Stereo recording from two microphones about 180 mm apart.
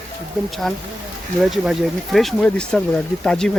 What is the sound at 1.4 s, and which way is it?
Speech, centre (ahead or behind).